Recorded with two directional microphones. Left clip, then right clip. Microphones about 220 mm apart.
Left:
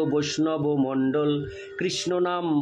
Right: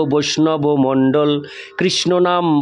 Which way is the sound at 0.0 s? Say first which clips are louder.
Right 9 dB; 50° right (ahead or behind).